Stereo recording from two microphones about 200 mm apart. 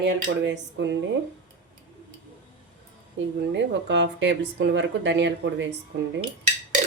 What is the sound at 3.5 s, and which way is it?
Speech, 60° right (ahead or behind).